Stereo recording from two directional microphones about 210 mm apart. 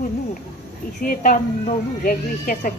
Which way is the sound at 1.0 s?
40° left (ahead or behind).